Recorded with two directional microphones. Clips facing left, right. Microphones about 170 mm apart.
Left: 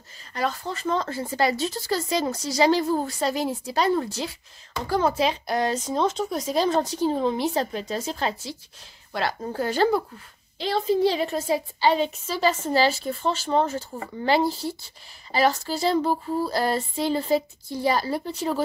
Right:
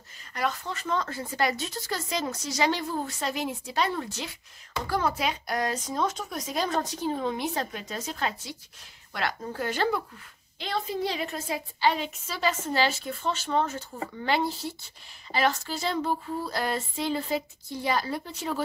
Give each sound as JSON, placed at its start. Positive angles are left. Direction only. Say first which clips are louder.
{"t": 0.3, "sound": "a woman's voice", "louder": "left 3 dB", "side_deg": 30}